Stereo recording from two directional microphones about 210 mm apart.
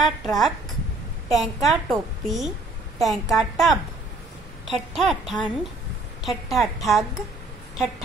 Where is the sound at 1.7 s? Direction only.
Centre (ahead or behind).